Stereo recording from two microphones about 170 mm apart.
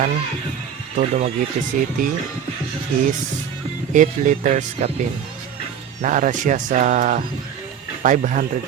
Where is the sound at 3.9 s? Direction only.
45° right (ahead or behind).